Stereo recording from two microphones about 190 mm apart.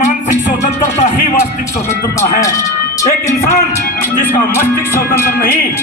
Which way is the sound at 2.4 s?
15° left (ahead or behind).